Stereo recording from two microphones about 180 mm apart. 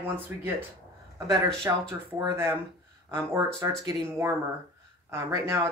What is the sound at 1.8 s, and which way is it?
Speech, 15° right (ahead or behind).